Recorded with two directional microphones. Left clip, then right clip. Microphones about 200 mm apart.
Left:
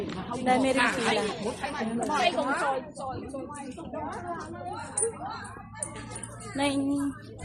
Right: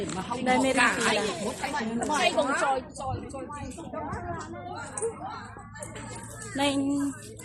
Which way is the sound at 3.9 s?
Centre (ahead or behind).